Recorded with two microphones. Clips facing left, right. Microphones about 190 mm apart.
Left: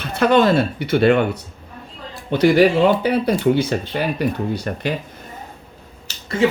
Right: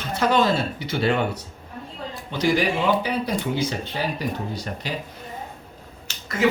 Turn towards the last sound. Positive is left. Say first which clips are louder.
# left 5 dB
turn(degrees=30)  # may be behind; listen again after turning